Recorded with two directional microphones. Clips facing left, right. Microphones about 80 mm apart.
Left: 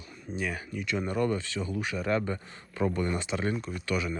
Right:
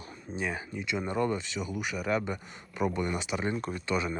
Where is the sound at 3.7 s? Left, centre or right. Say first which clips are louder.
Even; right.